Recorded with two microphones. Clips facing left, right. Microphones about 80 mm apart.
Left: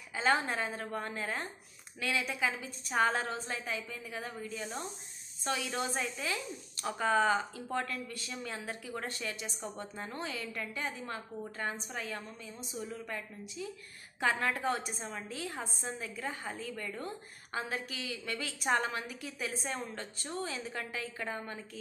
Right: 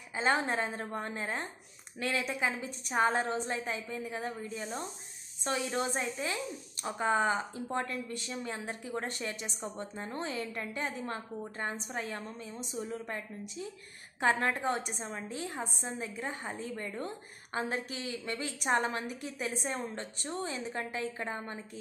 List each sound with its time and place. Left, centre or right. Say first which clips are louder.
0.1 s a woman's voice: right 1 dB; right
2.0 s a woman's voice: right 1 dB; right
2.2 s a woman's voice: right 1 dB; right
19.7 s a woman's voice: right 2 dB; right